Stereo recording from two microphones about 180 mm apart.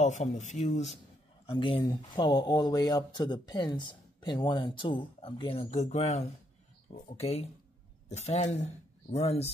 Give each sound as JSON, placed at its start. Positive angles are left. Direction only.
{"t": 0.0, "sound": "speech", "side_deg": 40}
{"t": 1.4, "sound": "speech", "side_deg": 30}